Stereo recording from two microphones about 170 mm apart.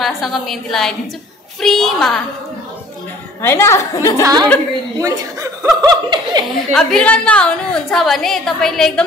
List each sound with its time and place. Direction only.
0.0 s a woman's voice: centre (ahead or behind)
3.4 s a woman's voice: 15° left (ahead or behind)
4.2 s speech: 20° right (ahead or behind)
6.7 s a woman's voice: 5° left (ahead or behind)